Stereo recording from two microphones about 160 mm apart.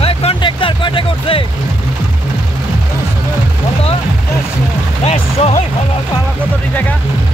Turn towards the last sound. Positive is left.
turn(degrees=40)  # may be behind; listen again after turning